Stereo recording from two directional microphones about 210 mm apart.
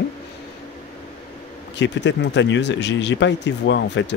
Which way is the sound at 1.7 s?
55° left (ahead or behind).